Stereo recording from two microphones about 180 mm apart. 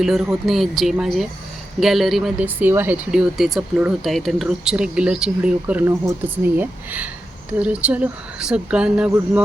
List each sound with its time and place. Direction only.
0.0 s speech: centre (ahead or behind)